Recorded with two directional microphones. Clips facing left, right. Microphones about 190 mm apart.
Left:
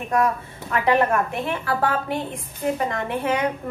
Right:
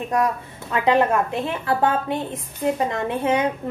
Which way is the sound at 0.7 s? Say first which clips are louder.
Right 1 dB; 20° right (ahead or behind).